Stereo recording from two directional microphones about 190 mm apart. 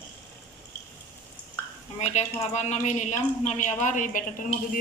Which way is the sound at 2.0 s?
35° left (ahead or behind).